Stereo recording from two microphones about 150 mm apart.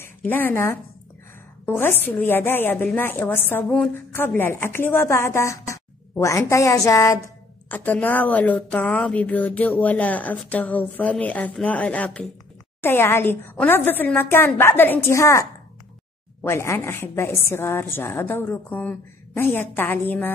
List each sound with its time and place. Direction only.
0.0 s speech: 15° left (ahead or behind)
16.4 s speech: 15° left (ahead or behind)